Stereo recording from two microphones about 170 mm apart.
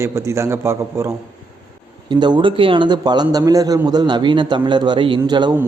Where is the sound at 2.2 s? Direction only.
25° right (ahead or behind).